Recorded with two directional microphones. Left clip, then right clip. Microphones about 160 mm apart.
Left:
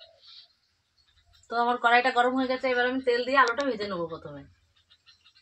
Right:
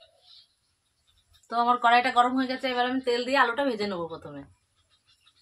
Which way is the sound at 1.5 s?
10° right (ahead or behind).